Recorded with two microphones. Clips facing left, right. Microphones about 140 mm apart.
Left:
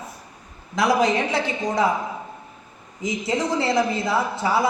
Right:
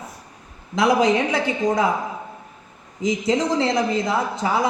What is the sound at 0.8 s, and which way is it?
Speech, 20° right (ahead or behind).